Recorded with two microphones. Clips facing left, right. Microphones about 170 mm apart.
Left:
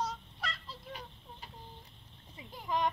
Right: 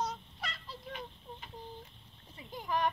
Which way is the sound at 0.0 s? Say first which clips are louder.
Even; centre (ahead or behind).